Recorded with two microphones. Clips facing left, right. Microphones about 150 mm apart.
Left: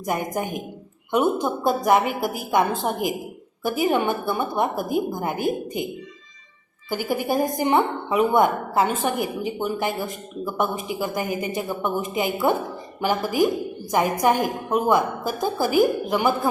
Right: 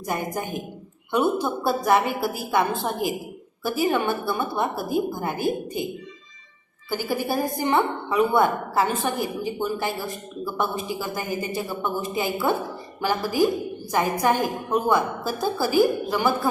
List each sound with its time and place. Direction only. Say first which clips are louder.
0.3 s a woman's voice: left 2 dB; 15° left (ahead or behind)
6.9 s a woman's voice: left 2 dB; 15° left (ahead or behind)